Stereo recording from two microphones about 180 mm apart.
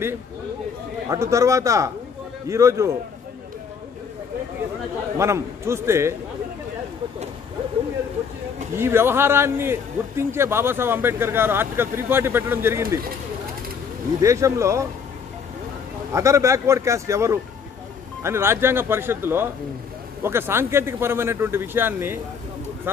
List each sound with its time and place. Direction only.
1.0 s a man's voice: 15° right (ahead or behind)
5.1 s a man's voice: 15° right (ahead or behind)
8.7 s a man's voice: 15° right (ahead or behind)
14.2 s a man's voice: 15° right (ahead or behind)
16.1 s a man's voice: 15° right (ahead or behind)